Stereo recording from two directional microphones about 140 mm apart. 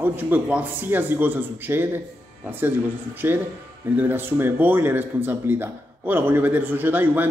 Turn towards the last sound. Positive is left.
turn(degrees=-15)  # may be behind; listen again after turning